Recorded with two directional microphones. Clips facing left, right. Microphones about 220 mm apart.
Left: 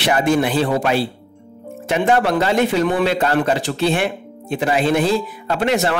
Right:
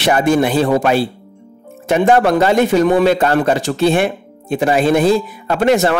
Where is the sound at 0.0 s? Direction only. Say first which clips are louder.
Right 3 dB; 45° right (ahead or behind).